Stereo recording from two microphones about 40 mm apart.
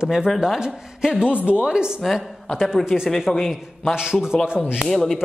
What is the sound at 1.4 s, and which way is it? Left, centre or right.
Speech, right.